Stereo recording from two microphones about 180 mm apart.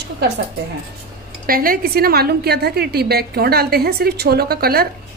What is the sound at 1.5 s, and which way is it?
A woman's voice, 55° right (ahead or behind).